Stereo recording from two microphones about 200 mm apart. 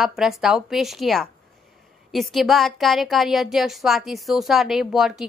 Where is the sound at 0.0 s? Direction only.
Centre (ahead or behind).